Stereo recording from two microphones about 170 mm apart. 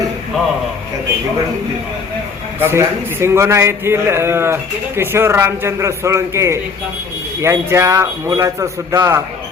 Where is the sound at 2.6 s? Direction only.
15° right (ahead or behind).